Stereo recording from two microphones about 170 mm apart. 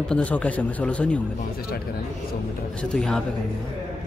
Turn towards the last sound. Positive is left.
turn(degrees=5)  # may be behind; listen again after turning